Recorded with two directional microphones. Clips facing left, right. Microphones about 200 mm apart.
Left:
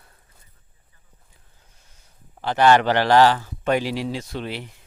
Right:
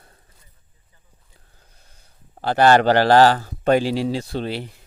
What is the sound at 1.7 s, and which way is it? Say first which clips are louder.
Speech: right 2 dB; 35° right (ahead or behind).